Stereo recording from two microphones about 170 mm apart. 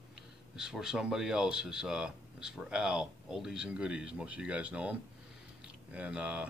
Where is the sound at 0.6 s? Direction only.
5° right (ahead or behind).